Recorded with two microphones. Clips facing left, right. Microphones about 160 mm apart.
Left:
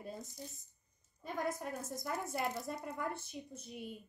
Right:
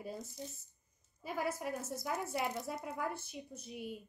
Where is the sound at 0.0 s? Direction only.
5° right (ahead or behind).